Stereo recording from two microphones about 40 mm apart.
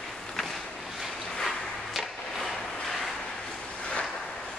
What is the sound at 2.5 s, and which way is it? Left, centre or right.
Vehicle, centre.